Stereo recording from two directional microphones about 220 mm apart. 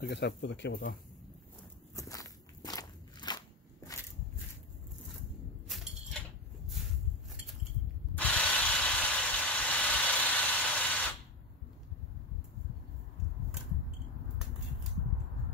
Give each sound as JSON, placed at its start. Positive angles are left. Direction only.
{"t": 0.0, "sound": "speech", "side_deg": 50}
{"t": 2.0, "sound": "walk", "side_deg": 15}
{"t": 8.1, "sound": "mechanisms", "side_deg": 5}